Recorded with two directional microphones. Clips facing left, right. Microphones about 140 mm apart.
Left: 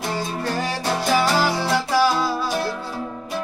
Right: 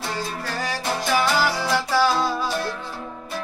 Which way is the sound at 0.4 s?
25° left (ahead or behind).